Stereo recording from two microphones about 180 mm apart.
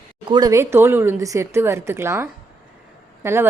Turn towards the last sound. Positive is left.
turn(degrees=-15)  # may be behind; listen again after turning